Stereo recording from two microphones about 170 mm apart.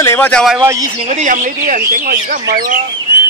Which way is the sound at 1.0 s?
45° right (ahead or behind).